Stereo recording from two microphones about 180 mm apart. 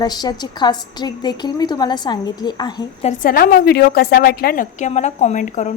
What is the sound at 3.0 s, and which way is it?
A woman's voice, 50° left (ahead or behind).